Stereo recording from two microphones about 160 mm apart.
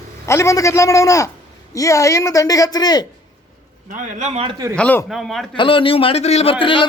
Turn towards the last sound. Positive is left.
turn(degrees=35)  # may be behind; listen again after turning